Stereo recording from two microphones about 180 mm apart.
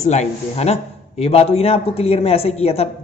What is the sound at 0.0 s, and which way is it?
A man's voice, 40° left (ahead or behind).